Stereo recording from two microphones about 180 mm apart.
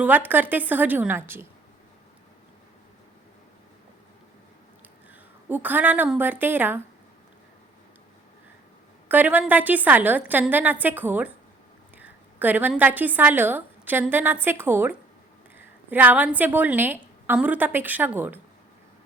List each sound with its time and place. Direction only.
0.3 s a woman's voice: 10° right (ahead or behind)
5.5 s a woman's voice: 10° right (ahead or behind)
9.0 s a woman's voice: 10° right (ahead or behind)